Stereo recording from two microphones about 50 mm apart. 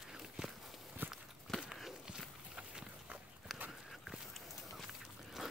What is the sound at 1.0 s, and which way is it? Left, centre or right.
Walk, right.